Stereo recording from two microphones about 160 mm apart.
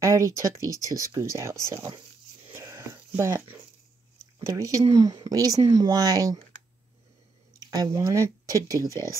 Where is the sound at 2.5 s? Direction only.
20° right (ahead or behind).